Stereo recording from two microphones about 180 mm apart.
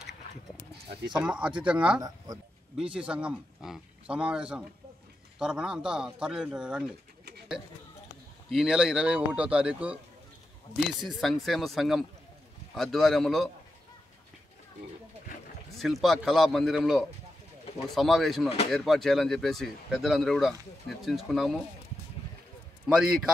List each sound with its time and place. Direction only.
1.1 s speech: 5° right (ahead or behind)
2.0 s speech: 20° right (ahead or behind)
2.9 s speech: 5° right (ahead or behind)
8.5 s speech: 5° right (ahead or behind)
11.1 s speech: centre (ahead or behind)
15.8 s speech: centre (ahead or behind)
22.8 s speech: 5° right (ahead or behind)